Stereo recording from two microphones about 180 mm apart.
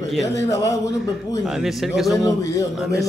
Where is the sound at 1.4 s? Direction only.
Centre (ahead or behind).